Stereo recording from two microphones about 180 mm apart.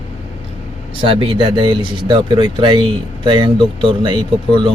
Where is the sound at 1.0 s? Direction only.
30° right (ahead or behind).